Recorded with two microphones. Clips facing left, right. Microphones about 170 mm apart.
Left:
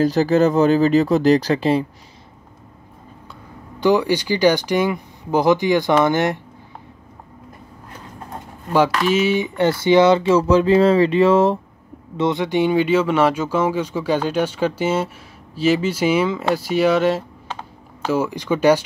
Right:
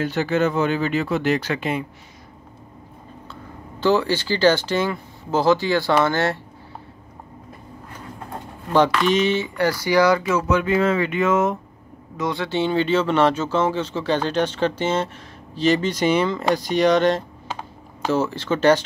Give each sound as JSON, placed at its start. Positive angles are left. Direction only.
{"t": 0.0, "sound": "speech", "side_deg": 35}
{"t": 3.8, "sound": "speech", "side_deg": 15}
{"t": 8.7, "sound": "speech", "side_deg": 5}
{"t": 9.6, "sound": "speech", "side_deg": 25}
{"t": 12.2, "sound": "speech", "side_deg": 20}